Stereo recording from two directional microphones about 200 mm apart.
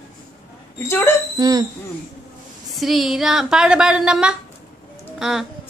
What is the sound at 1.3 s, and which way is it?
Speech, 20° right (ahead or behind).